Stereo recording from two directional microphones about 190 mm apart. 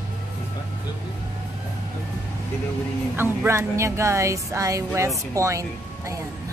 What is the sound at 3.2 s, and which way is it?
Speech, 15° right (ahead or behind).